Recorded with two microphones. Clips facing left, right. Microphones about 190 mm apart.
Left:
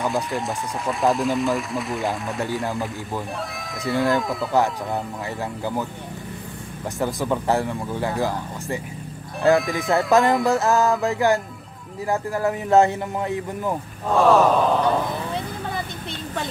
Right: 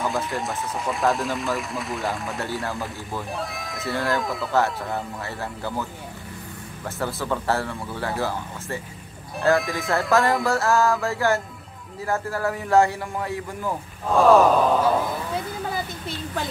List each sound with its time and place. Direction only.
0.0 s speech: centre (ahead or behind)
2.4 s speech: 15° left (ahead or behind)
3.5 s speech: centre (ahead or behind)
5.6 s speech: 15° left (ahead or behind)
7.0 s speech: 15° left (ahead or behind)
9.6 s speech: centre (ahead or behind)
10.4 s a man's voice: 20° left (ahead or behind)
14.1 s speech: centre (ahead or behind)
15.7 s a sound: centre (ahead or behind)